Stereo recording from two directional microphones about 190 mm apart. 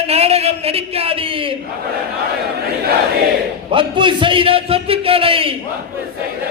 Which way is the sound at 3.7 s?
25° right (ahead or behind).